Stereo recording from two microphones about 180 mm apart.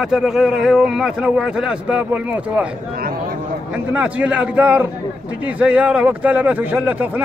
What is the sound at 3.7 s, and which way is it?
Speech, 5° right (ahead or behind).